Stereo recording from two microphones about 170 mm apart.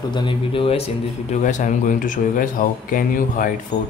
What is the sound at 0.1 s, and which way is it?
Speech, 30° left (ahead or behind).